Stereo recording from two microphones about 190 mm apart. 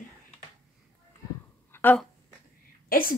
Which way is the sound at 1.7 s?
10° left (ahead or behind).